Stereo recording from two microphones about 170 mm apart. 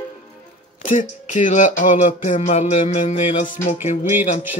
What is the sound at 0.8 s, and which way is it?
Music, 50° left (ahead or behind).